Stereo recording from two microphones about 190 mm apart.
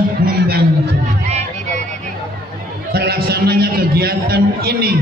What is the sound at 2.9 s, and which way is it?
A man's voice, 55° right (ahead or behind).